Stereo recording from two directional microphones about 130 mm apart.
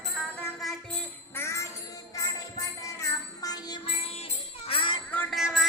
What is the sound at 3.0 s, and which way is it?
Music, 30° left (ahead or behind).